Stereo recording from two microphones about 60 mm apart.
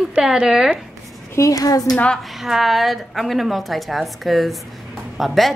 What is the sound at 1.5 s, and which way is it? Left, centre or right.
Speech, left.